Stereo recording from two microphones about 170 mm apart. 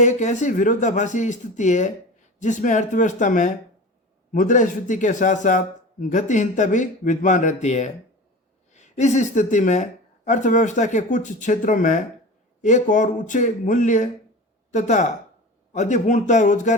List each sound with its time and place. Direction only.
0.0 s a man's voice: 45° left (ahead or behind)